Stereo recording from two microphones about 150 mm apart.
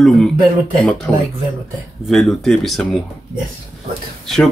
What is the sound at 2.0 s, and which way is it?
Speech, centre (ahead or behind).